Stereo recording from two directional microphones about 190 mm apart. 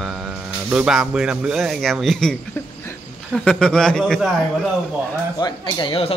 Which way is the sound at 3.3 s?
5° left (ahead or behind).